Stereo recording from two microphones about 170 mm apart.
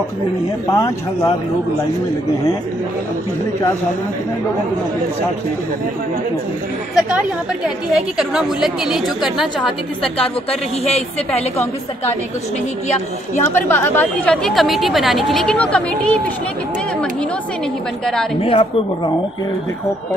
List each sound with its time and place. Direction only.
0.7 s speech: 20° left (ahead or behind)
7.0 s a woman's voice: 5° right (ahead or behind)
10.9 s a woman's voice: 35° left (ahead or behind)
13.4 s a woman's voice: 10° left (ahead or behind)
18.0 s a woman's voice: 5° left (ahead or behind)
18.4 s a woman's voice: 30° left (ahead or behind)